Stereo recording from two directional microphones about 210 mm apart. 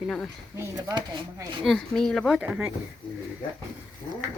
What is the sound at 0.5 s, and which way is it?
Speech, 15° right (ahead or behind).